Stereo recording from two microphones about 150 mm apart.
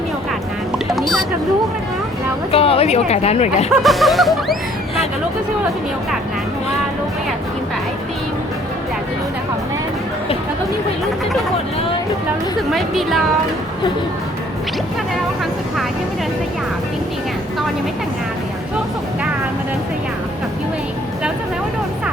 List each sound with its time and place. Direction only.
0.9 s music: centre (ahead or behind)
2.5 s a woman's voice: 40° left (ahead or behind)
3.7 s music: centre (ahead or behind)
12.7 s music: centre (ahead or behind)